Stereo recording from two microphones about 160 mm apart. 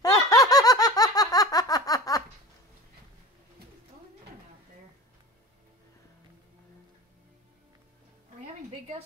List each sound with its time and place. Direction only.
0.0 s laughter: 20° left (ahead or behind)